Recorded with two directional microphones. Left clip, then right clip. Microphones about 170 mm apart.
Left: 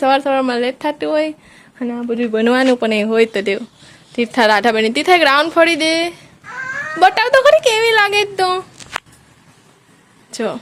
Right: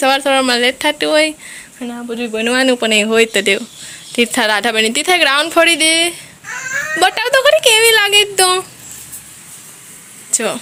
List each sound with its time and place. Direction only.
0.0 s speech: 10° left (ahead or behind)
1.8 s speech: 25° left (ahead or behind)
2.5 s speech: 10° left (ahead or behind)
10.3 s speech: 5° left (ahead or behind)